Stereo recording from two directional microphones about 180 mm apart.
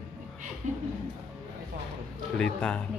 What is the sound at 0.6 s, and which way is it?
Speech, 45° right (ahead or behind).